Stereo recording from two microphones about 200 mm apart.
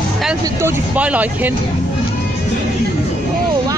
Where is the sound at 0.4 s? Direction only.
10° right (ahead or behind).